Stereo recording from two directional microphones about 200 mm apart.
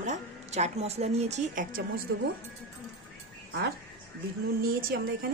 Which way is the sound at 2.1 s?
65° right (ahead or behind).